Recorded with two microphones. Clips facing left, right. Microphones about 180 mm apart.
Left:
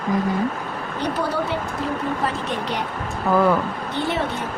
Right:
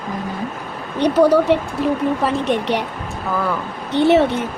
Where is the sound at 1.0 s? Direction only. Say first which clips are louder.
Right 11 dB; 80° right.